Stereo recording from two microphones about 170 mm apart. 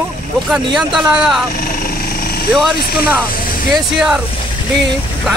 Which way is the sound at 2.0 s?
60° left (ahead or behind).